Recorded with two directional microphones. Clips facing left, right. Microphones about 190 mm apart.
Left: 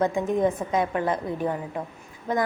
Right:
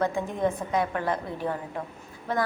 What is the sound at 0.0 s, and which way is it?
A woman's voice, 20° left (ahead or behind).